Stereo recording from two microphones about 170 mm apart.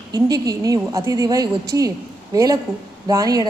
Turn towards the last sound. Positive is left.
turn(degrees=-20)  # may be behind; listen again after turning